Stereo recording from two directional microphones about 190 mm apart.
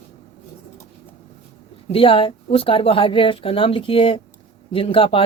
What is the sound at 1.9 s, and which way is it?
A woman's voice, 30° left (ahead or behind).